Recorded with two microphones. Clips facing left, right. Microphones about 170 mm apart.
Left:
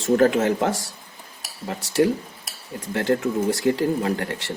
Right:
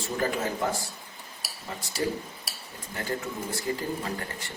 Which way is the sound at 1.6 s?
70° left (ahead or behind).